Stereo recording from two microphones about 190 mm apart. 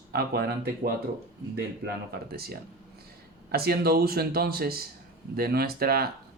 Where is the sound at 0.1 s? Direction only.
55° right (ahead or behind).